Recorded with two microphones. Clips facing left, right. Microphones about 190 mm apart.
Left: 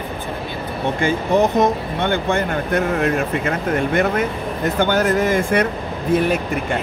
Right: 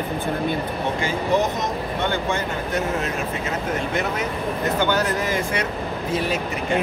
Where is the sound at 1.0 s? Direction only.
55° left (ahead or behind).